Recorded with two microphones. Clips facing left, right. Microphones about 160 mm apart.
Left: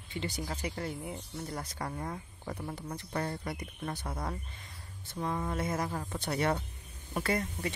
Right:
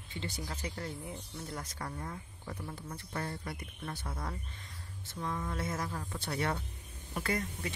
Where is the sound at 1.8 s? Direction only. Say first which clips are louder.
Left 4 dB; 40° left (ahead or behind).